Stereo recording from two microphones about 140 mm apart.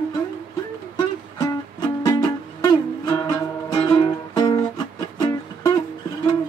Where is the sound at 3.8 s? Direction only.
30° left (ahead or behind).